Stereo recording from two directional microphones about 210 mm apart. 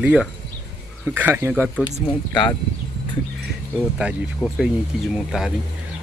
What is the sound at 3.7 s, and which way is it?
Speech, centre (ahead or behind).